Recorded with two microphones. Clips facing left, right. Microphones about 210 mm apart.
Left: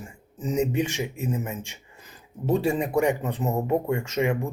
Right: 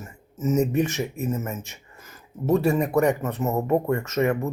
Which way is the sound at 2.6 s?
10° left (ahead or behind).